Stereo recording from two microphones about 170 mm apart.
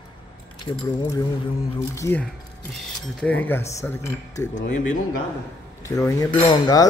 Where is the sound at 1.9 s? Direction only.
15° left (ahead or behind).